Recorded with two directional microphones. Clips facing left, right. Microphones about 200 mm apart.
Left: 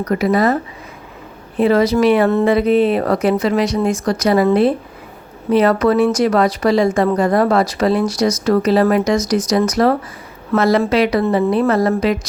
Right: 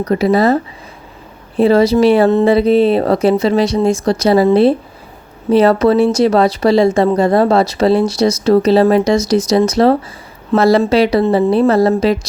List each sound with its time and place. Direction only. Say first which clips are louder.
0.0 s speech: right 3 dB; 30° right (ahead or behind)
5.5 s speech: right 3 dB; 30° right (ahead or behind)